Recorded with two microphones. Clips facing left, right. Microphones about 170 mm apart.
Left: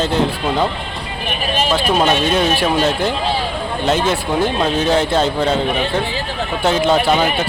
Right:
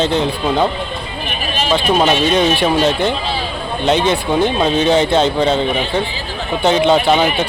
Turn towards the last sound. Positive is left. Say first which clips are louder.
# right 2 dB
turn(degrees=0)  # may be behind; listen again after turning